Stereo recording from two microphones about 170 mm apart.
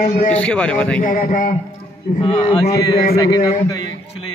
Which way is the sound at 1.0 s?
50° left (ahead or behind).